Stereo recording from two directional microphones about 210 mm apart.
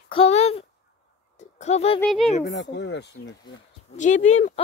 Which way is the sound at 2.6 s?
55° left (ahead or behind).